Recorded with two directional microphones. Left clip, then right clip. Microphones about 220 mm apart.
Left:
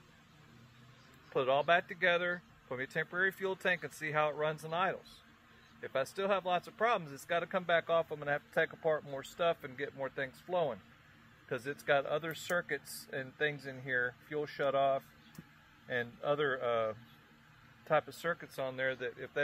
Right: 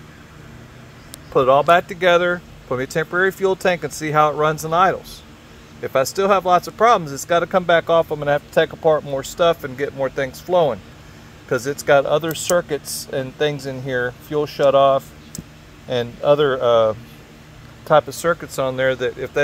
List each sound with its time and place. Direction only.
1.3 s speech: 15° right (ahead or behind)
15.9 s speech: 15° right (ahead or behind)
17.9 s speech: 15° right (ahead or behind)